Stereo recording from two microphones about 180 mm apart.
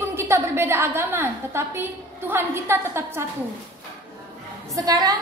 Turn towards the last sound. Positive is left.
turn(degrees=-20)  # may be behind; listen again after turning